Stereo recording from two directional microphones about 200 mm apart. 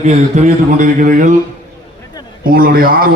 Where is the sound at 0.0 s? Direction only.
35° right (ahead or behind).